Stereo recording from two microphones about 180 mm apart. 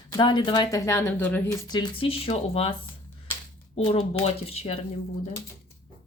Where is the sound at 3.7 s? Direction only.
35° left (ahead or behind).